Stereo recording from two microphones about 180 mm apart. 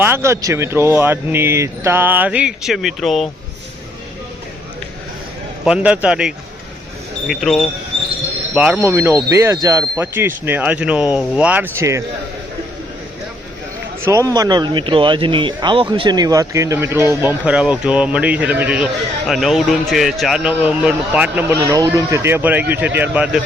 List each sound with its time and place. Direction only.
0.0 s speech: 15° right (ahead or behind)
5.6 s a man's voice: 5° right (ahead or behind)
14.0 s a man's voice: 15° right (ahead or behind)
21.6 s speech: 20° right (ahead or behind)